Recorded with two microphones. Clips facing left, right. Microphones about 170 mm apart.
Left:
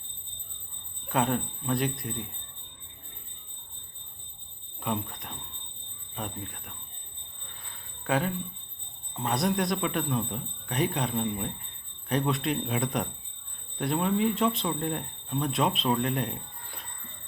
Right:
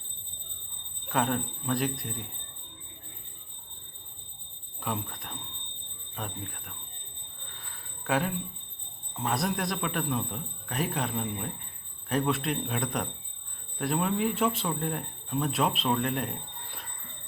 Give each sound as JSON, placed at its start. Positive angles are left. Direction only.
{"t": 1.0, "sound": "speech", "side_deg": 0}
{"t": 4.8, "sound": "speech", "side_deg": 0}
{"t": 8.0, "sound": "speech", "side_deg": -5}